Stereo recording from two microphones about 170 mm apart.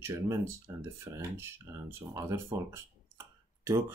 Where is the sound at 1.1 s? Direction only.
15° right (ahead or behind).